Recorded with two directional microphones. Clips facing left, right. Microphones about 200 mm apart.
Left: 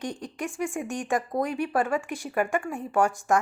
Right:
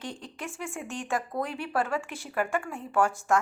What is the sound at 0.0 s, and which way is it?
A woman's voice, 15° left (ahead or behind).